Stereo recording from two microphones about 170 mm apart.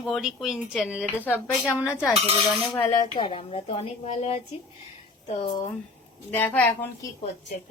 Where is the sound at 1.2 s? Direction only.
10° left (ahead or behind).